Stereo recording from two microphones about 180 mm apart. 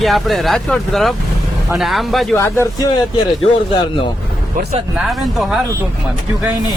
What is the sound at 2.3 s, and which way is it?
Speech, 15° left (ahead or behind).